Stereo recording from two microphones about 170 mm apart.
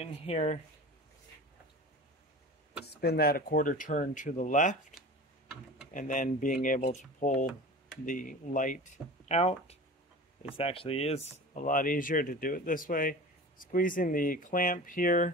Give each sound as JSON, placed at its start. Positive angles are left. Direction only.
{"t": 0.0, "sound": "speech", "side_deg": 40}
{"t": 2.8, "sound": "speech", "side_deg": 70}
{"t": 5.9, "sound": "speech", "side_deg": 50}
{"t": 11.3, "sound": "speech", "side_deg": 50}